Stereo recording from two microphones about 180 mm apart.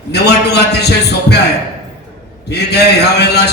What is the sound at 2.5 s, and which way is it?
Music, 65° left (ahead or behind).